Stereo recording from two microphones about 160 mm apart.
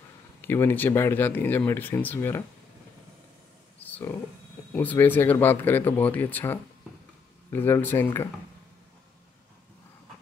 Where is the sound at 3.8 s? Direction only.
15° left (ahead or behind).